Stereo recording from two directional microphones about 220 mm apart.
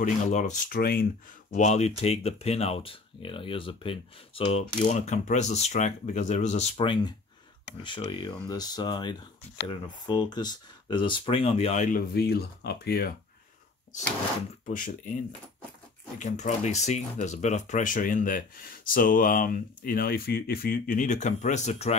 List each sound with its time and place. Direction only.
0.0 s speech: 35° left (ahead or behind)
1.5 s speech: 30° left (ahead or behind)
14.7 s speech: 35° left (ahead or behind)
16.2 s speech: 35° left (ahead or behind)